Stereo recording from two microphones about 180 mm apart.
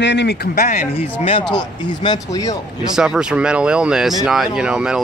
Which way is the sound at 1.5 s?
25° left (ahead or behind).